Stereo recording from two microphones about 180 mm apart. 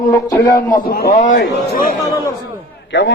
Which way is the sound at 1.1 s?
45° left (ahead or behind).